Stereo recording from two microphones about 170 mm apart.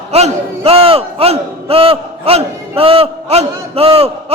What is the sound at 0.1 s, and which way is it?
A man's voice, 35° right (ahead or behind).